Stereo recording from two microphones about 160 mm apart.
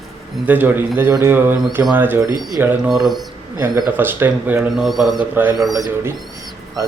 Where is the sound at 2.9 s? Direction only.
Centre (ahead or behind).